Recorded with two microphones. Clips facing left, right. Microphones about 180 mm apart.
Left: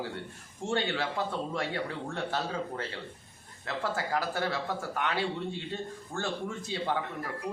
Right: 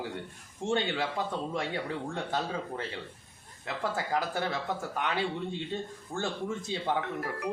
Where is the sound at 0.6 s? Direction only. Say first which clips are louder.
Right 1 dB; 15° right (ahead or behind).